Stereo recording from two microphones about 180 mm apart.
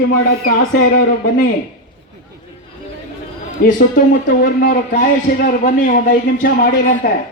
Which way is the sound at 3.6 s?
50° left (ahead or behind).